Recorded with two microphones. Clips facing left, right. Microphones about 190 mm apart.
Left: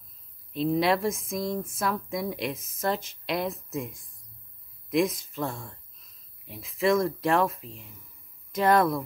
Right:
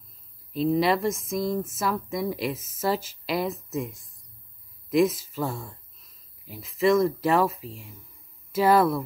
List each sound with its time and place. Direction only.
0.5 s speech: centre (ahead or behind)